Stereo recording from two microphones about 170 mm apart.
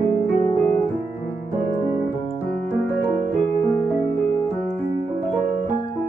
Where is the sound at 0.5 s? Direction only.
15° left (ahead or behind).